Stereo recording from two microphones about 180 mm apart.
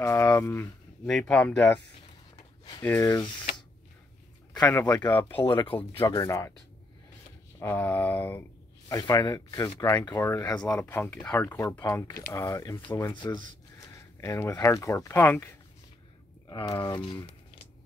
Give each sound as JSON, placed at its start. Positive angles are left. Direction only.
{"t": 0.0, "sound": "speech", "side_deg": 10}
{"t": 1.0, "sound": "speech", "side_deg": 5}
{"t": 2.8, "sound": "speech", "side_deg": 15}
{"t": 4.6, "sound": "speech", "side_deg": 15}
{"t": 7.6, "sound": "speech", "side_deg": 10}
{"t": 16.4, "sound": "speech", "side_deg": 25}